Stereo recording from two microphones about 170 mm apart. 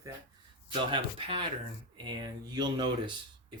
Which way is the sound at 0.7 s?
30° right (ahead or behind).